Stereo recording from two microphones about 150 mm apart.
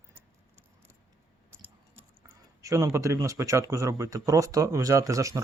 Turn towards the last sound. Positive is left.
turn(degrees=-20)  # may be behind; listen again after turning